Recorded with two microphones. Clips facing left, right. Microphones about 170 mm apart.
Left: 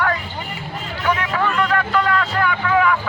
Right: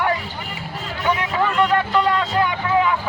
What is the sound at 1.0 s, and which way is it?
Music, 20° right (ahead or behind).